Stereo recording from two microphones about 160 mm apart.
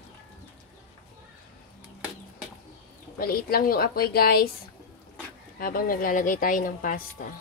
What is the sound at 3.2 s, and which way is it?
A woman's voice, 65° left (ahead or behind).